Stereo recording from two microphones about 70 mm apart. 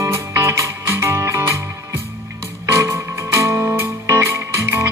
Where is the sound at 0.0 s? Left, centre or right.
Right.